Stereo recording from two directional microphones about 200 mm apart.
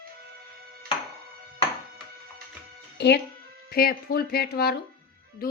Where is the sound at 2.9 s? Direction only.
60° left (ahead or behind).